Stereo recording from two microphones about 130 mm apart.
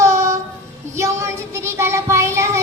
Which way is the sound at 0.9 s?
20° right (ahead or behind).